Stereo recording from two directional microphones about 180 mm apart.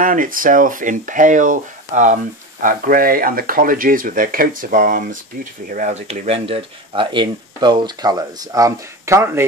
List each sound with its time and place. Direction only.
0.0 s speech: 50° right (ahead or behind); by 9.5 s 15° right (ahead or behind)